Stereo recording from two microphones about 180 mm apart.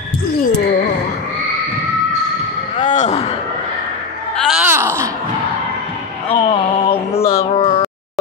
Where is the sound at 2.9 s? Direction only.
40° left (ahead or behind).